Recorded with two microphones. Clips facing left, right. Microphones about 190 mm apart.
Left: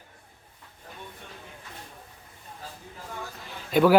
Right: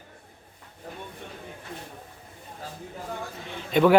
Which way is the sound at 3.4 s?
5° left (ahead or behind).